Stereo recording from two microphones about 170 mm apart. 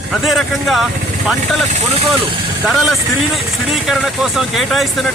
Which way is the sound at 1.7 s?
40° right (ahead or behind).